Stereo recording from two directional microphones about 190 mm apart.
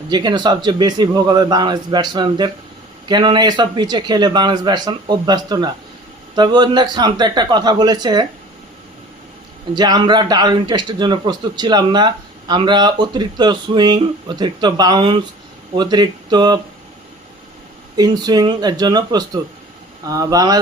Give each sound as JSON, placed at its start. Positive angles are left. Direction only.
{"t": 0.1, "sound": "a man's voice", "side_deg": -25}
{"t": 9.7, "sound": "a man's voice", "side_deg": -20}
{"t": 17.9, "sound": "a man's voice", "side_deg": -20}